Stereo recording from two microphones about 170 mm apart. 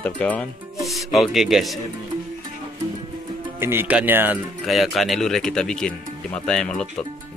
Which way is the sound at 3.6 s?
15° right (ahead or behind).